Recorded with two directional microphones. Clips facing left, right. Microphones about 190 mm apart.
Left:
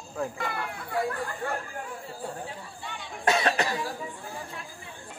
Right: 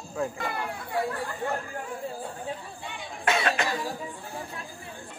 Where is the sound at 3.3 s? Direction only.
35° left (ahead or behind).